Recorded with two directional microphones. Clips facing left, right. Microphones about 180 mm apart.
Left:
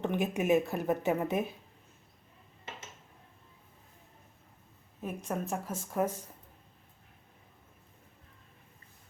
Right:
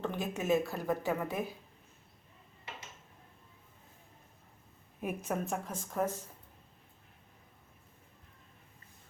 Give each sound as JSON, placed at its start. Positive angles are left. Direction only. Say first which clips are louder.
{"t": 0.0, "sound": "speech", "louder": "left 5 dB", "side_deg": 15}
{"t": 4.9, "sound": "speech", "louder": "even", "side_deg": -5}